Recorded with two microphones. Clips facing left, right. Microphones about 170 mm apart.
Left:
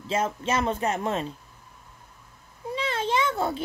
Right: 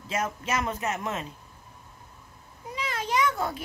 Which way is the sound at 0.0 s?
30° left (ahead or behind).